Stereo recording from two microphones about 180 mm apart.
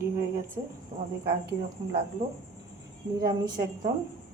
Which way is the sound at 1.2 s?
60° right (ahead or behind).